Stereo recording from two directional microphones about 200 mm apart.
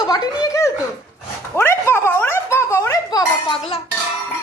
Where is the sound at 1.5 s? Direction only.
10° left (ahead or behind).